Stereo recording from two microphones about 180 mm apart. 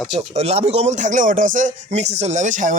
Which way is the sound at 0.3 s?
35° right (ahead or behind).